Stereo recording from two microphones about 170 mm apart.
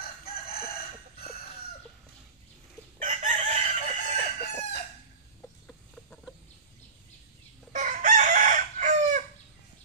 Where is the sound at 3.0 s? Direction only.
45° right (ahead or behind).